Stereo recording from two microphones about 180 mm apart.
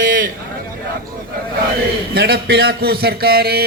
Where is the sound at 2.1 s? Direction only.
60° right (ahead or behind).